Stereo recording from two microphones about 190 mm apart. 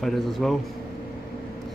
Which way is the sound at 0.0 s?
Centre (ahead or behind).